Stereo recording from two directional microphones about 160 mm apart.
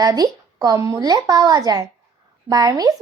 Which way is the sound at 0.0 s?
25° right (ahead or behind).